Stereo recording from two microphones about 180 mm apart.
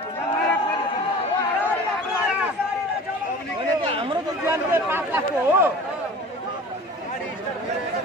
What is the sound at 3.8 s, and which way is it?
Chatter, 30° right (ahead or behind).